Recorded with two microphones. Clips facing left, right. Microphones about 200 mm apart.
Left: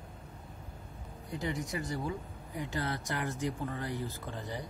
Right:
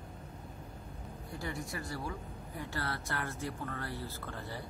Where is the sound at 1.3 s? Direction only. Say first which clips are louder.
Left 5 dB; 20° left (ahead or behind).